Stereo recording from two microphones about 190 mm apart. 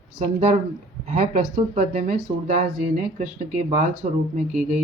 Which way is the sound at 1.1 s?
40° right (ahead or behind).